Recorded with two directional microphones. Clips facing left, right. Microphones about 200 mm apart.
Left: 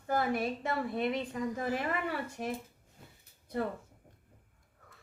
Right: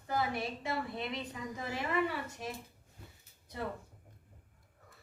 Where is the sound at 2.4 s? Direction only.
55° left (ahead or behind).